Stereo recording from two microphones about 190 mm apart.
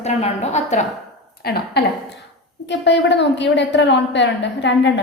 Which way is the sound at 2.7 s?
70° left (ahead or behind).